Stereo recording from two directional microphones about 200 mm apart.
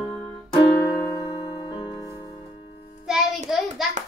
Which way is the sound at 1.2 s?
30° left (ahead or behind).